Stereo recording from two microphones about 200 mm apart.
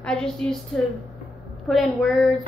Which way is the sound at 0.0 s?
5° left (ahead or behind).